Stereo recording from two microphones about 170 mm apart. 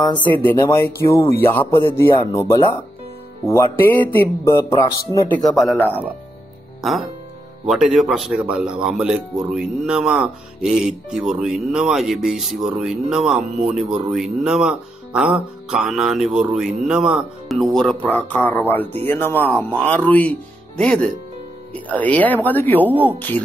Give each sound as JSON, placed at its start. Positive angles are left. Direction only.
{"t": 0.3, "sound": "speech", "side_deg": 10}
{"t": 5.3, "sound": "speech", "side_deg": 0}
{"t": 6.8, "sound": "speech", "side_deg": 0}